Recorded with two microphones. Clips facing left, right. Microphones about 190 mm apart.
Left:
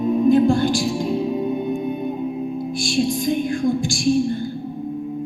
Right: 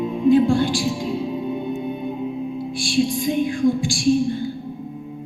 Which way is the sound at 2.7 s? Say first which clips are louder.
Right 1 dB; 45° left (ahead or behind).